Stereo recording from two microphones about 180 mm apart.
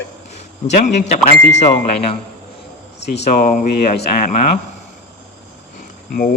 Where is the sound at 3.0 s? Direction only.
70° left (ahead or behind).